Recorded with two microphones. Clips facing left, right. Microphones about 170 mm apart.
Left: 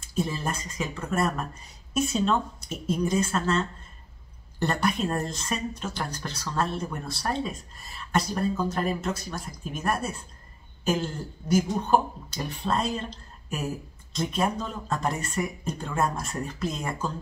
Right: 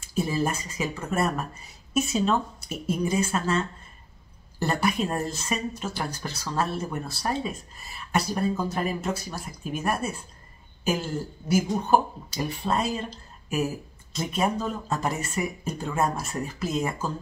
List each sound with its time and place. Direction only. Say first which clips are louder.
0.0 s speech: right 3 dB; 10° right (ahead or behind)